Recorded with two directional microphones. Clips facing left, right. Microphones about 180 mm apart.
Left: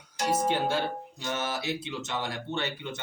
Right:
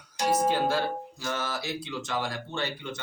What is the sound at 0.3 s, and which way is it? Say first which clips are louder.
Speech: right 2 dB; 25° left (ahead or behind).